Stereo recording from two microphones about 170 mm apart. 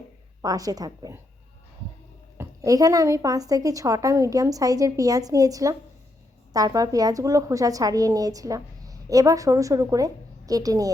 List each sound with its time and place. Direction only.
0.4 s a woman's voice: 20° right (ahead or behind)
2.4 s a woman's voice: 20° right (ahead or behind)